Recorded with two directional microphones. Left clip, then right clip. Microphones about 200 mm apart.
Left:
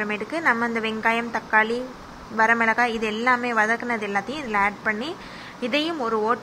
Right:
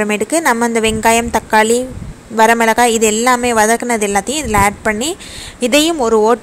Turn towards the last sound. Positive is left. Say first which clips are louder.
# right 12 dB
turn(degrees=-30)  # may be behind; listen again after turning